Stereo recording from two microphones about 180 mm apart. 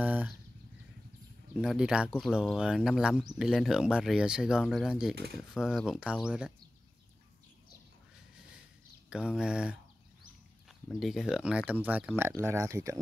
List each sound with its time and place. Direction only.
0.0 s a sound: 10° right (ahead or behind)
1.6 s speech: 5° right (ahead or behind)
9.1 s speech: 5° right (ahead or behind)
10.9 s speech: centre (ahead or behind); by 13.0 s 15° right (ahead or behind)